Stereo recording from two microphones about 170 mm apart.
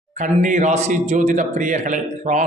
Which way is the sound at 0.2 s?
45° right (ahead or behind).